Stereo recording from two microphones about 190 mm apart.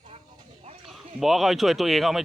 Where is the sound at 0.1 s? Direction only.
30° right (ahead or behind).